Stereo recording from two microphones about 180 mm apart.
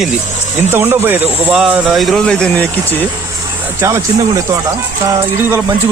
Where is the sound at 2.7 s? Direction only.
10° right (ahead or behind).